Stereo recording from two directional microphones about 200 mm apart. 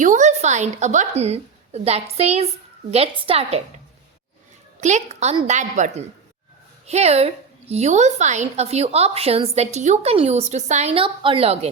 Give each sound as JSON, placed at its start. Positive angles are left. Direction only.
{"t": 0.0, "sound": "a woman's voice", "side_deg": -40}
{"t": 4.8, "sound": "a woman's voice", "side_deg": -35}